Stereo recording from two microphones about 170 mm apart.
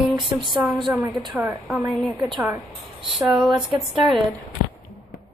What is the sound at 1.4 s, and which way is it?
A woman's voice, 5° right (ahead or behind).